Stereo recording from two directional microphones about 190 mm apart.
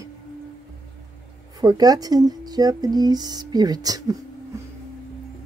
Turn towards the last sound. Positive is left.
turn(degrees=-20)  # may be behind; listen again after turning